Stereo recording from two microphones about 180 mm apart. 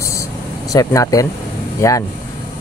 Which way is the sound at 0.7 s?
20° left (ahead or behind).